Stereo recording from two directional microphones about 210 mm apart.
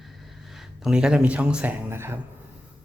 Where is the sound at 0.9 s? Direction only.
5° right (ahead or behind).